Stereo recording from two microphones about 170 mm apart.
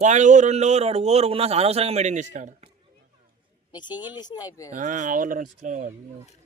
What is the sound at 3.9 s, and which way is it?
Speech, 10° right (ahead or behind).